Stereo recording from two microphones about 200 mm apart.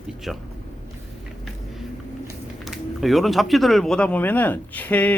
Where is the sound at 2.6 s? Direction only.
Centre (ahead or behind).